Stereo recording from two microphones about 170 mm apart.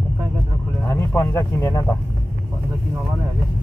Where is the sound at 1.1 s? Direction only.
20° left (ahead or behind).